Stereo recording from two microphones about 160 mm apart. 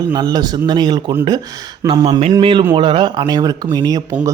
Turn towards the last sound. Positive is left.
turn(degrees=-25)  # may be behind; listen again after turning